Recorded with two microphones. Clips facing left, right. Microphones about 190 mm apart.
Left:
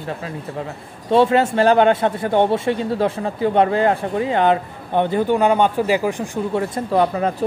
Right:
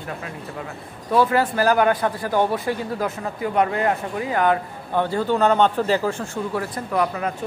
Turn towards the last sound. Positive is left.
turn(degrees=30)  # may be behind; listen again after turning